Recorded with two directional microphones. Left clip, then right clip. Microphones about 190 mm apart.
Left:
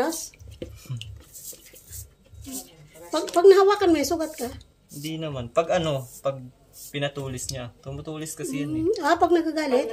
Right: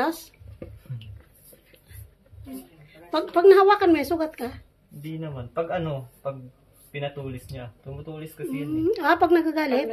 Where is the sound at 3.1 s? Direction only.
10° left (ahead or behind).